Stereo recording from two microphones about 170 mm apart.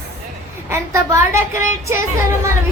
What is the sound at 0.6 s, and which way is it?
Child singing, 15° right (ahead or behind).